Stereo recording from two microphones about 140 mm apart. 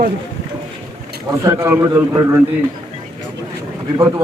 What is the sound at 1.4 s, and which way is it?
A man's voice, 20° right (ahead or behind).